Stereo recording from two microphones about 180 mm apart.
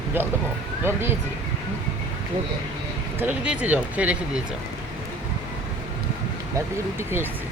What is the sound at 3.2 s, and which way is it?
Speech, 5° right (ahead or behind).